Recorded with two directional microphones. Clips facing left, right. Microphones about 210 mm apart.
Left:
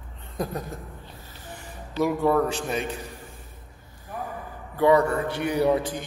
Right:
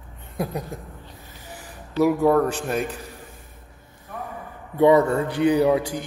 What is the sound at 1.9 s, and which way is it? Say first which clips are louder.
Speech: right 4 dB; 5° right (ahead or behind).